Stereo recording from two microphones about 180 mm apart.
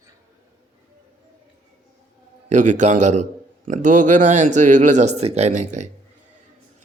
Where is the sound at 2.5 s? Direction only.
45° right (ahead or behind).